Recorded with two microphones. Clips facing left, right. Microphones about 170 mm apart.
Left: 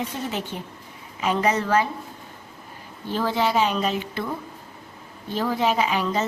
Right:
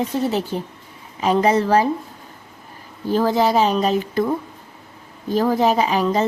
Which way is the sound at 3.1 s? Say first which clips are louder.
Right 6 dB; 40° right (ahead or behind).